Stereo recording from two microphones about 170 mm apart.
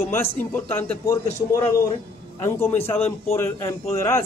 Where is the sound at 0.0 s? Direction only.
15° left (ahead or behind).